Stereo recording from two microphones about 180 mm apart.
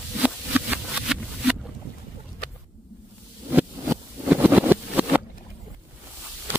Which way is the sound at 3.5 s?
10° right (ahead or behind).